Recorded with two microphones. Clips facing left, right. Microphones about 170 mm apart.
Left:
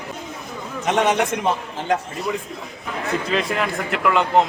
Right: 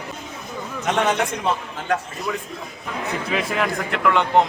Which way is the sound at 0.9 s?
20° left (ahead or behind).